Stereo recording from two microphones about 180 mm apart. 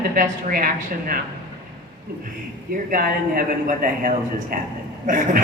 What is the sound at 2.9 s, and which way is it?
A man's voice, 55° right (ahead or behind).